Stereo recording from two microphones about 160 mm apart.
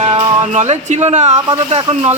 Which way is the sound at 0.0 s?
35° right (ahead or behind).